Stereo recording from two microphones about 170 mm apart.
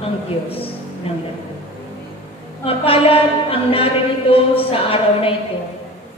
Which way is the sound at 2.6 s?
35° left (ahead or behind).